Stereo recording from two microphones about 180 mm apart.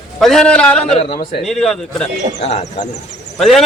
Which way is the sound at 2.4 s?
40° left (ahead or behind).